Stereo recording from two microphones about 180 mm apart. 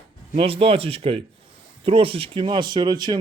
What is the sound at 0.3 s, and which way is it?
Speech, 30° right (ahead or behind).